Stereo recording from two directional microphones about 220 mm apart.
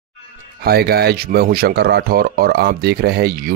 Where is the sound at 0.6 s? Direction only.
45° right (ahead or behind).